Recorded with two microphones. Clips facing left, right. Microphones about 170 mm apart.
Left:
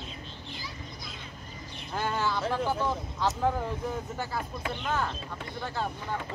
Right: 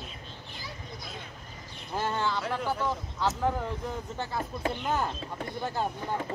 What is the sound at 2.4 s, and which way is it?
Speech, 15° left (ahead or behind).